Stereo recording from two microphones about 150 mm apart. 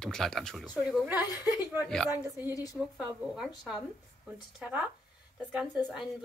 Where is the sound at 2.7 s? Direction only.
5° right (ahead or behind).